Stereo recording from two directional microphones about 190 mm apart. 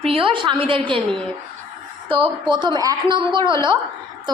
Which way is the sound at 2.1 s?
25° right (ahead or behind).